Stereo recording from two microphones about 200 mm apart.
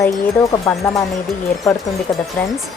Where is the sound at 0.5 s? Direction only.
15° left (ahead or behind).